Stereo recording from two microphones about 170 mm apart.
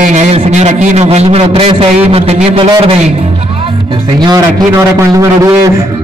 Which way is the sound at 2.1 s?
35° right (ahead or behind).